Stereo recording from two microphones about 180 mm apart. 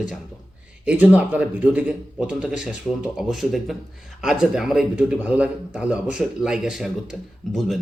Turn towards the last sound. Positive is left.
turn(degrees=0)  # may be behind; listen again after turning